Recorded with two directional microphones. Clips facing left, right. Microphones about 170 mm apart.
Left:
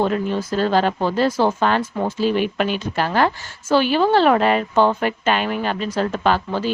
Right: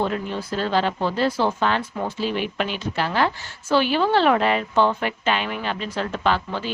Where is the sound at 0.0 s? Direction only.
40° left (ahead or behind).